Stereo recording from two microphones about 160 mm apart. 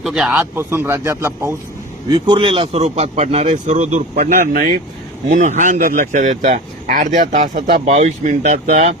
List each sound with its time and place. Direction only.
0.0 s speech: centre (ahead or behind)
0.5 s speech: 15° right (ahead or behind)
2.0 s speech: 30° right (ahead or behind); by 4.4 s 50° right (ahead or behind)
4.4 s speech: 60° right (ahead or behind)
5.3 s speech: 50° right (ahead or behind)